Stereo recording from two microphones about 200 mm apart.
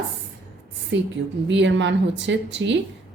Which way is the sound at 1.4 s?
65° right (ahead or behind).